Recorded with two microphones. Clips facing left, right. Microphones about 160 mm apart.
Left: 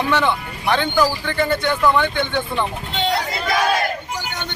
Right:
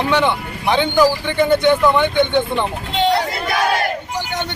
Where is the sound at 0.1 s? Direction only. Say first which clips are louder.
Right 2 dB; 15° right (ahead or behind).